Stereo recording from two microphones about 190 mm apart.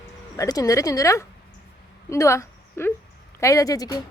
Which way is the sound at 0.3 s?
20° left (ahead or behind).